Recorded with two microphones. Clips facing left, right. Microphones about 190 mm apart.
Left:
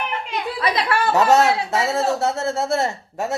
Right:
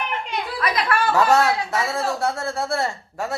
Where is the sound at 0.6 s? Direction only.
30° left (ahead or behind).